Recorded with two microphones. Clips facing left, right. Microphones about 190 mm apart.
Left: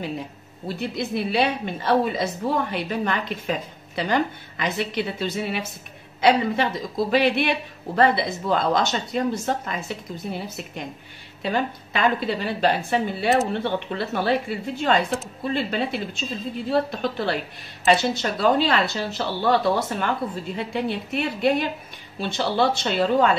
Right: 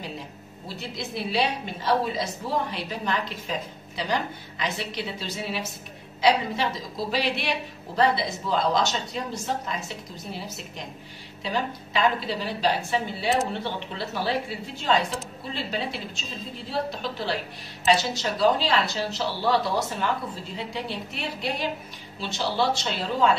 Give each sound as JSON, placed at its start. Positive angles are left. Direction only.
{"t": 0.7, "sound": "a woman's voice", "side_deg": 55}
{"t": 11.4, "sound": "a woman's voice", "side_deg": 60}